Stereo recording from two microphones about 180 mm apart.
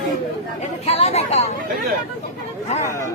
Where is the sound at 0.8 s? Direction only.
35° left (ahead or behind).